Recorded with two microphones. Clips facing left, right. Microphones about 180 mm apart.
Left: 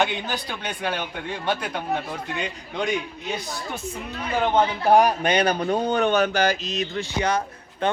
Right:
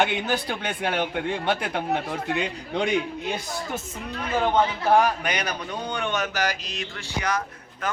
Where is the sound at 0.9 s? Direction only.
25° right (ahead or behind).